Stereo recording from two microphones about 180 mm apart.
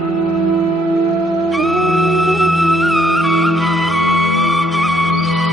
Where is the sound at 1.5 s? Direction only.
Centre (ahead or behind).